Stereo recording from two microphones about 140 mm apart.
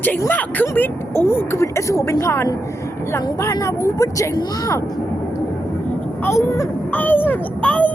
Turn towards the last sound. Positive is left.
turn(degrees=10)  # may be behind; listen again after turning